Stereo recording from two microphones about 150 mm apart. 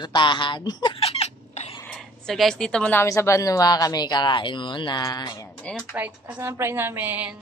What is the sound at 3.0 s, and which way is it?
Speech, 20° left (ahead or behind).